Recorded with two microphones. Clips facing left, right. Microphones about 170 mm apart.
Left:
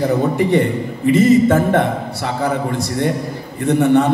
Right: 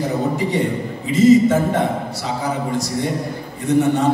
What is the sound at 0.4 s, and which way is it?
A man's voice, 60° left (ahead or behind).